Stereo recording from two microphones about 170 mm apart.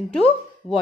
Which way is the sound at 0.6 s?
35° left (ahead or behind).